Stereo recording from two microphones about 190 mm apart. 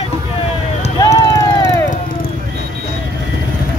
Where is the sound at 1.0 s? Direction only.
20° left (ahead or behind).